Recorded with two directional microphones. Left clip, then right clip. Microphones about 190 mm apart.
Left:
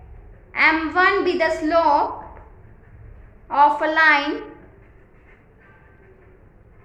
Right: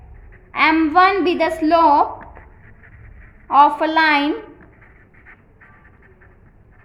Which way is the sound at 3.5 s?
35° right (ahead or behind).